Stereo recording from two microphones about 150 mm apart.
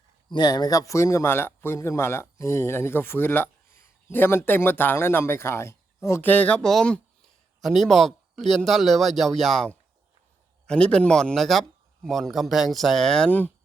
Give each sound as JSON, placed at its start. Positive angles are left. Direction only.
{"t": 0.3, "sound": "a man's voice", "side_deg": 30}